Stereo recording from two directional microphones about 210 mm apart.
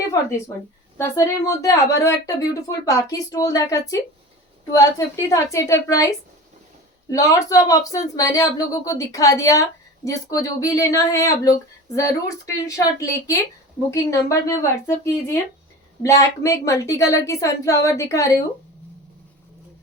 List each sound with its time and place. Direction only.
0.1 s a woman's voice: 15° left (ahead or behind)